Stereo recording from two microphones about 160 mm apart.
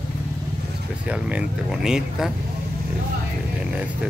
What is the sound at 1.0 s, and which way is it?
Speech, 10° right (ahead or behind).